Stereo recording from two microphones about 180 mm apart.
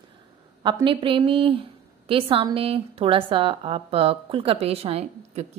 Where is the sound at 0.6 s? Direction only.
25° right (ahead or behind).